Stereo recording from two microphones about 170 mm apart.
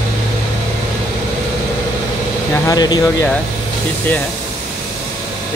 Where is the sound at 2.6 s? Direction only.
25° left (ahead or behind).